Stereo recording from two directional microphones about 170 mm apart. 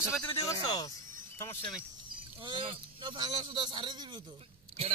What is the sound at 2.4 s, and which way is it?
Speech, 30° right (ahead or behind).